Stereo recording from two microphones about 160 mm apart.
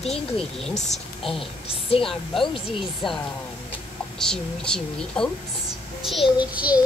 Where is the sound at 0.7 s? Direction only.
45° left (ahead or behind).